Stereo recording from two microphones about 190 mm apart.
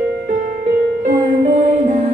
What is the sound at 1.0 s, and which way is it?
Music, 40° right (ahead or behind).